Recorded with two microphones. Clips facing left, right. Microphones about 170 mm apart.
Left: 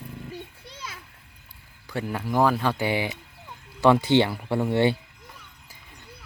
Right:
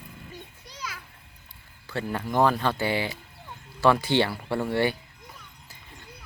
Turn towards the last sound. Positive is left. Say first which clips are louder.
# left 3 dB
turn(degrees=20)  # may be behind; listen again after turning